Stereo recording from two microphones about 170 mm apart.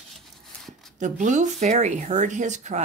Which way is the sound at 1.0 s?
45° right (ahead or behind).